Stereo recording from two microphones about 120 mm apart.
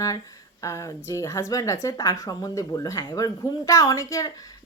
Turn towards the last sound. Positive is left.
turn(degrees=25)  # may be behind; listen again after turning